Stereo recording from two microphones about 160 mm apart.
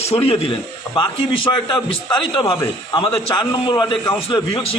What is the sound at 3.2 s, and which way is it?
A man's voice, 30° left (ahead or behind).